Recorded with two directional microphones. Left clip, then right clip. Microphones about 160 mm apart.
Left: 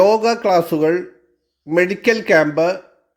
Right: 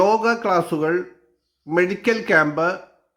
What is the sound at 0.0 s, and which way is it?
Speech, 20° left (ahead or behind).